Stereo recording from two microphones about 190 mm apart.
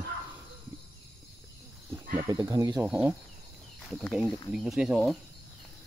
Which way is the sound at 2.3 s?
20° right (ahead or behind).